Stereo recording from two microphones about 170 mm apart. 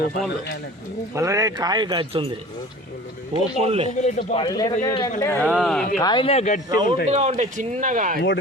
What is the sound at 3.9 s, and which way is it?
Speech, 45° left (ahead or behind).